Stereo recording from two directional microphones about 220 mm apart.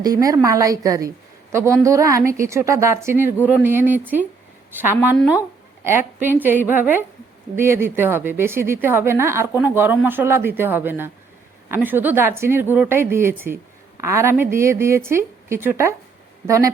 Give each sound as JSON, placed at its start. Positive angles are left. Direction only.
{"t": 0.0, "sound": "a woman's voice", "side_deg": -15}
{"t": 5.1, "sound": "speech", "side_deg": 0}
{"t": 5.8, "sound": "a woman's voice", "side_deg": -10}